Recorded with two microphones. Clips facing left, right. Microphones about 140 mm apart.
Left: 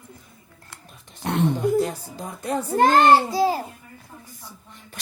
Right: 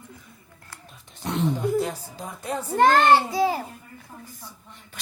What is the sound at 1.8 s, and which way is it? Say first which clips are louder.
A child's voice: left 3 dB; 45° left (ahead or behind).